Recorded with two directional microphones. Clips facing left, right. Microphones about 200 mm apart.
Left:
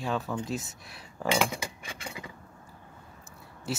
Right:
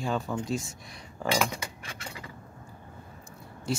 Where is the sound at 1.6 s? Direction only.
15° left (ahead or behind).